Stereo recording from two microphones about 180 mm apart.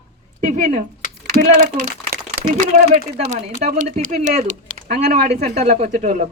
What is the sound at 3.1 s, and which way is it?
A woman's voice, 45° right (ahead or behind).